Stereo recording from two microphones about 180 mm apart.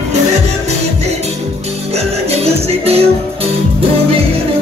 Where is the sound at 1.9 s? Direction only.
35° right (ahead or behind).